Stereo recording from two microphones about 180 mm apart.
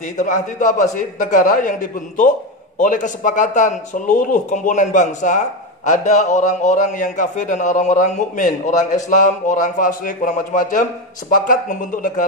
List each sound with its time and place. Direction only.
0.2 s a man's voice: 45° left (ahead or behind)